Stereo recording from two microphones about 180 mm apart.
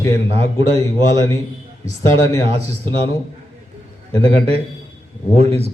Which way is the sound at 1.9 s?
35° right (ahead or behind).